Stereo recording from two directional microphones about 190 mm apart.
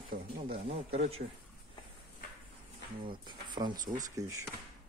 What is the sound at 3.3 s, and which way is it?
Speech, 25° right (ahead or behind).